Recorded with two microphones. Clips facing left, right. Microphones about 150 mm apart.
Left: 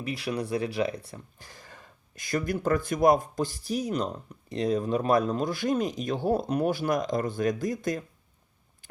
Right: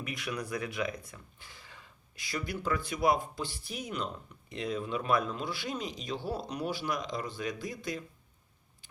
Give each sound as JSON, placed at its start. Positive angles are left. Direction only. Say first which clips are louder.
{"t": 0.0, "sound": "speech", "louder": "left 6 dB", "side_deg": 30}